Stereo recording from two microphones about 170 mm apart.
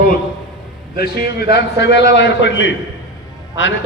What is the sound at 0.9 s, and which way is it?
Speech, 65° left (ahead or behind).